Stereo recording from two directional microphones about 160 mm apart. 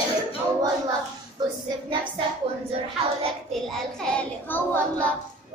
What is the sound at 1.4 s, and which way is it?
Speech, 25° right (ahead or behind).